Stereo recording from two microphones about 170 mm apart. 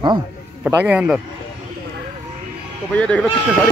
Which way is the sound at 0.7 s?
10° right (ahead or behind).